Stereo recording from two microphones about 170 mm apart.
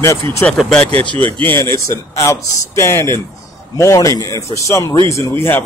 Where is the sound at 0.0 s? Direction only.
15° left (ahead or behind).